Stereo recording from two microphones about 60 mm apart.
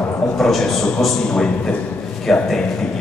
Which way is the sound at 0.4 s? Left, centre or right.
Centre.